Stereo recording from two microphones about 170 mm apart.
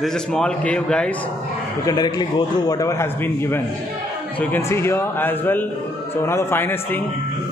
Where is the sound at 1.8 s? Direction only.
25° left (ahead or behind).